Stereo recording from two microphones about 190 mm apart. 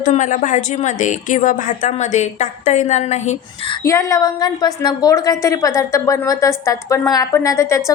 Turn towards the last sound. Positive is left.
turn(degrees=15)  # may be behind; listen again after turning